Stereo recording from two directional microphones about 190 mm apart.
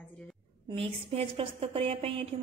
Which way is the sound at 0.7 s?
30° right (ahead or behind).